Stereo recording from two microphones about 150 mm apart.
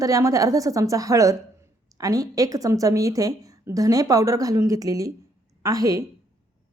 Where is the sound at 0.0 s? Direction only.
20° right (ahead or behind).